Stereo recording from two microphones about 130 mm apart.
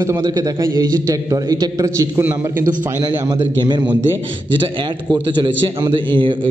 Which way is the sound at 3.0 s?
35° right (ahead or behind).